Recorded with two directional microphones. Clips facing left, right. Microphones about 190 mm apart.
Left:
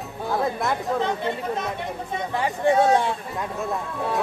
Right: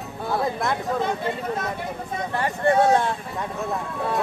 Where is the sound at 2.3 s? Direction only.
15° left (ahead or behind).